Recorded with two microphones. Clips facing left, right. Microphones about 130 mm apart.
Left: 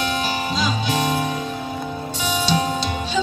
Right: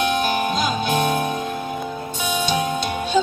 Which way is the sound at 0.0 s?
50° right (ahead or behind).